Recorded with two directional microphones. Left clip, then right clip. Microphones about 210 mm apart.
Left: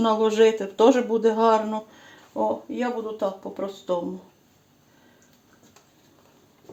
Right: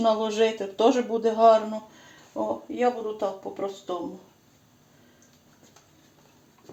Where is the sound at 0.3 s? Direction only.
35° left (ahead or behind).